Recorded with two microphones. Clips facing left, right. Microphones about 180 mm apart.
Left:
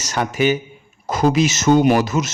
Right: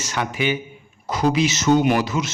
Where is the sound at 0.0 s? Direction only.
40° left (ahead or behind).